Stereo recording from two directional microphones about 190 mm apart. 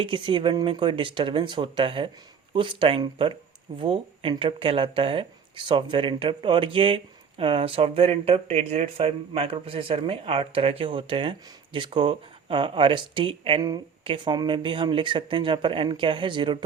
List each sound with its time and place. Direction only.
0.0 s speech: 25° right (ahead or behind)